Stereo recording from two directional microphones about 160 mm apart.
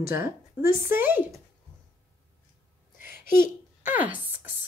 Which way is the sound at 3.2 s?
60° left (ahead or behind).